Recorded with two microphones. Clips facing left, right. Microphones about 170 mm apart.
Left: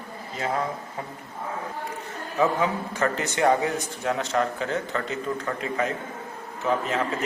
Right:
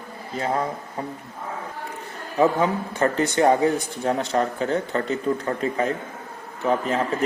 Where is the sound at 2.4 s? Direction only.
30° right (ahead or behind).